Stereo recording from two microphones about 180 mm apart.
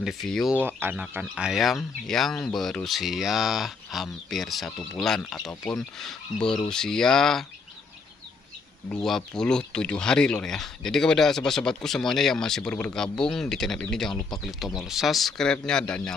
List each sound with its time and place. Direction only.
0.0 s speech: centre (ahead or behind)
0.6 s speech: 10° right (ahead or behind)
5.4 s speech: 20° left (ahead or behind)
5.7 s speech: centre (ahead or behind)
8.8 s speech: 5° left (ahead or behind)